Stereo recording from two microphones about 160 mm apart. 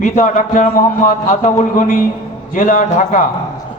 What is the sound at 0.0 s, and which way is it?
A man's voice, 55° left (ahead or behind).